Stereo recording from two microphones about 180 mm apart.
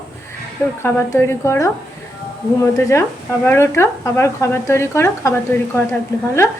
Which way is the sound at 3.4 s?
15° left (ahead or behind).